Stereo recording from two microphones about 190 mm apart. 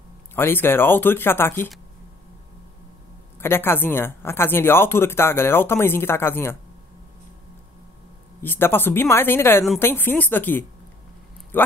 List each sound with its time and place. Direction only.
0.4 s speech: 10° left (ahead or behind)
3.3 s speech: 10° left (ahead or behind)
8.4 s speech: 10° left (ahead or behind)